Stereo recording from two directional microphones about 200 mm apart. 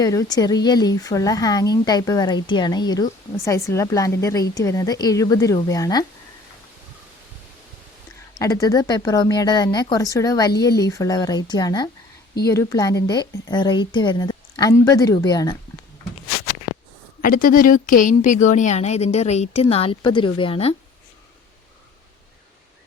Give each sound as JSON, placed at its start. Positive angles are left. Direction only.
{"t": 0.0, "sound": "a woman's voice", "side_deg": 15}
{"t": 8.4, "sound": "speech", "side_deg": 15}
{"t": 17.2, "sound": "a woman's voice", "side_deg": 45}